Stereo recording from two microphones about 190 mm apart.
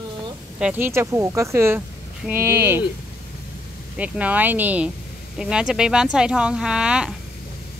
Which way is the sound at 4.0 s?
10° right (ahead or behind).